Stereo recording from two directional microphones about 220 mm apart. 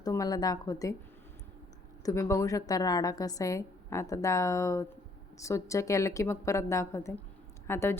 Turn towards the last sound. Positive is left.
turn(degrees=10)  # may be behind; listen again after turning